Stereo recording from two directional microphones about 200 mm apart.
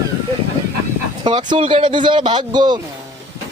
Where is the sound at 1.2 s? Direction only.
25° right (ahead or behind).